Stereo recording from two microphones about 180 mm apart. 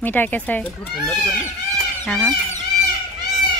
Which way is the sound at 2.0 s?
10° left (ahead or behind).